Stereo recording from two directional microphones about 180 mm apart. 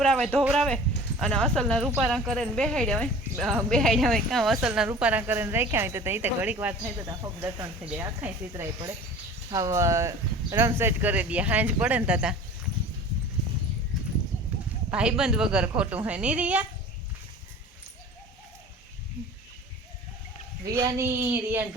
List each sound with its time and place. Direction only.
0.0 s speech: centre (ahead or behind)
7.0 s speech: 20° right (ahead or behind)
14.8 s speech: 5° right (ahead or behind)
20.7 s speech: 20° right (ahead or behind)